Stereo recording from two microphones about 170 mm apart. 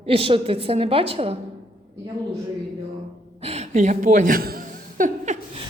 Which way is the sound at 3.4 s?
40° right (ahead or behind).